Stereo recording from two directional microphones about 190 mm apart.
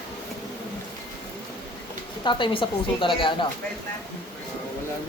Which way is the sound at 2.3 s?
25° left (ahead or behind).